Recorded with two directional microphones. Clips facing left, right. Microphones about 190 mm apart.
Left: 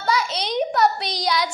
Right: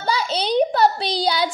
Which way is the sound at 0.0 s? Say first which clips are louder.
Right 1 dB; 30° right (ahead or behind).